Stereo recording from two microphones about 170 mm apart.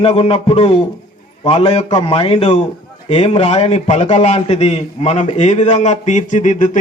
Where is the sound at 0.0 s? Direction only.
35° left (ahead or behind).